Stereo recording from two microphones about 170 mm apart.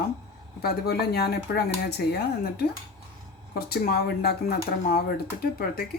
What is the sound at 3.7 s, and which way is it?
Speech, 70° left (ahead or behind).